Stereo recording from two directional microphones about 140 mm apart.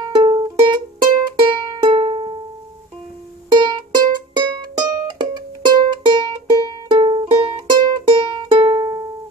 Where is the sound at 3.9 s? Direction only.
30° right (ahead or behind).